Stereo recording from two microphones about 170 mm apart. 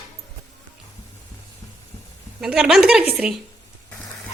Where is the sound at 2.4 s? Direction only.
5° right (ahead or behind).